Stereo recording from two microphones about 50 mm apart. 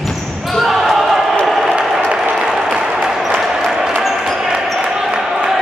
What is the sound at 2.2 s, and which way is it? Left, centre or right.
Applause, right.